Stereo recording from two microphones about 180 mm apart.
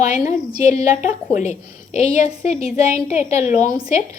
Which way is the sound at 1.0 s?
40° left (ahead or behind).